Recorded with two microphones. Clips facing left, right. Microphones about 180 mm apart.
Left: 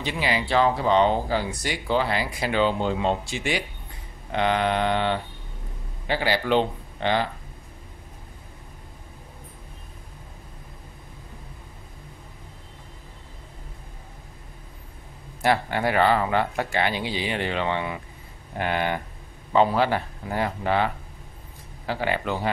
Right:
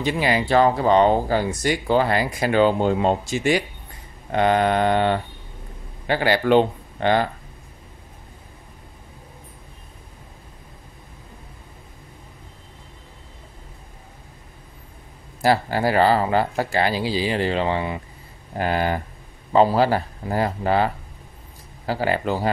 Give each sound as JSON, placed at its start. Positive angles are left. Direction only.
{"t": 0.0, "sound": "speech", "side_deg": -45}
{"t": 15.4, "sound": "speech", "side_deg": -35}